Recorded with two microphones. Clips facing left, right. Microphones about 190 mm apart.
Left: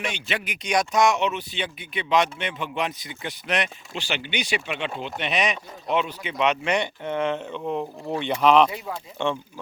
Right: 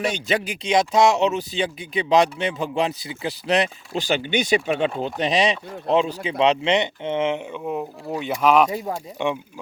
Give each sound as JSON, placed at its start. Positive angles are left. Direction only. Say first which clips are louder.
{"t": 0.0, "sound": "speech", "louder": "right 7 dB", "side_deg": -40}
{"t": 0.6, "sound": "speech", "louder": "right 3 dB", "side_deg": -25}
{"t": 7.6, "sound": "speech", "louder": "even", "side_deg": -5}
{"t": 8.7, "sound": "speech", "louder": "right 6 dB", "side_deg": -35}
{"t": 9.1, "sound": "speech", "louder": "right 1 dB", "side_deg": -15}